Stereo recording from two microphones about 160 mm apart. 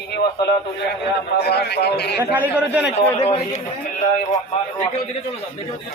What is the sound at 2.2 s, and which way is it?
Speech, 15° right (ahead or behind).